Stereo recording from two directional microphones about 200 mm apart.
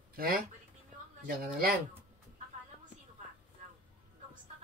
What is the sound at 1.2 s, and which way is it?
Speech, 45° right (ahead or behind).